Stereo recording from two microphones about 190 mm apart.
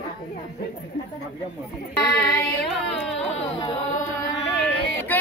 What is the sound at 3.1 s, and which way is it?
Speech, 35° left (ahead or behind).